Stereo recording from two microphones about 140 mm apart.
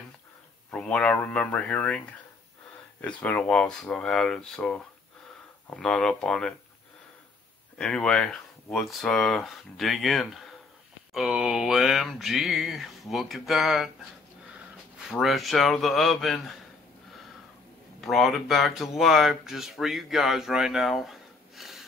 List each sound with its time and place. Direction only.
0.7 s speech: 10° left (ahead or behind)
7.7 s speech: 5° left (ahead or behind)
15.0 s speech: centre (ahead or behind)
18.0 s speech: centre (ahead or behind)